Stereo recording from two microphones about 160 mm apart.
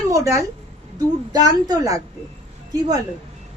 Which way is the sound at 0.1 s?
20° right (ahead or behind).